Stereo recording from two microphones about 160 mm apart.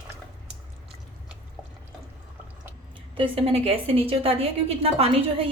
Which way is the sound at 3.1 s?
35° right (ahead or behind).